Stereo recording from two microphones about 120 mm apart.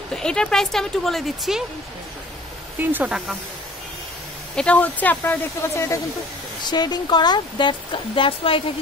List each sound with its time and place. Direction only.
0.1 s speech: 5° left (ahead or behind)
2.8 s speech: 15° right (ahead or behind)
4.6 s speech: 10° left (ahead or behind)
6.7 s speech: 35° left (ahead or behind)